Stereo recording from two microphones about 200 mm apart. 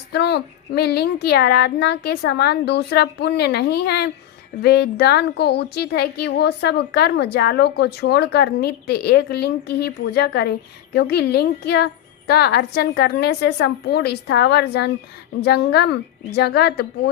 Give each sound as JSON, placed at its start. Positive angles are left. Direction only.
{"t": 0.1, "sound": "a woman's voice", "side_deg": 55}